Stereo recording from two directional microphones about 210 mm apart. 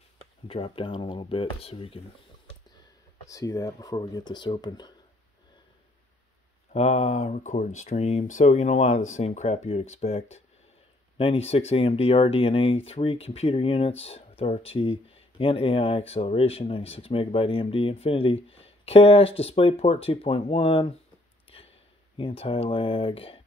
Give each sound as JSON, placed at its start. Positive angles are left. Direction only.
{"t": 0.5, "sound": "speech", "side_deg": 25}
{"t": 3.3, "sound": "speech", "side_deg": 15}
{"t": 6.7, "sound": "speech", "side_deg": 30}
{"t": 21.5, "sound": "a sound", "side_deg": 25}
{"t": 22.1, "sound": "speech", "side_deg": 25}